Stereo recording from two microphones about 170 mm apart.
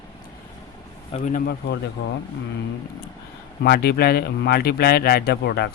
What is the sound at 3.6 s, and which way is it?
A man's voice, 70° left (ahead or behind).